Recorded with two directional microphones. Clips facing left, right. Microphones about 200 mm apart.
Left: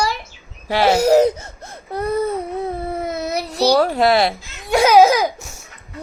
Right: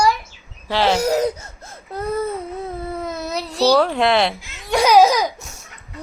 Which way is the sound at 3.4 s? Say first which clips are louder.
Even; 15° left (ahead or behind).